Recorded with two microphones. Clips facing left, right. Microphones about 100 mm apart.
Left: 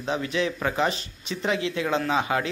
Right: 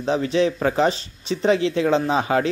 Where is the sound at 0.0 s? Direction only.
30° right (ahead or behind).